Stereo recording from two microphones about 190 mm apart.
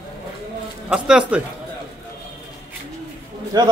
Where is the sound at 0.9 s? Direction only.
5° right (ahead or behind).